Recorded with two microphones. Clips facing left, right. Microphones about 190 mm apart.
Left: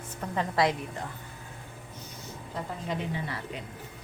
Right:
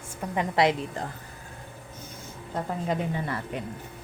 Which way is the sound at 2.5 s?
50° right (ahead or behind).